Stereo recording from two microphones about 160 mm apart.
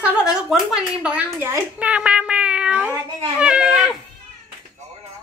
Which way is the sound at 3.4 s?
5° right (ahead or behind).